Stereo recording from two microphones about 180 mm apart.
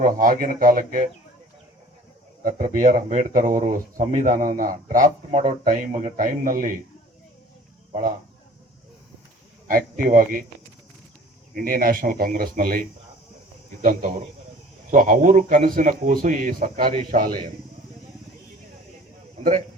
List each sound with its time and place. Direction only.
0.0 s speech: 45° right (ahead or behind)
2.4 s speech: 50° right (ahead or behind)
9.6 s speech: 50° right (ahead or behind)
11.5 s a man's voice: 55° right (ahead or behind)